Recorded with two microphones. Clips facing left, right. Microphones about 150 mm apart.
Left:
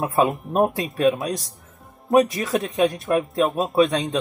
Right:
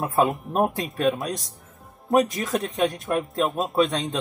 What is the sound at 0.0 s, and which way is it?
Speech, centre (ahead or behind).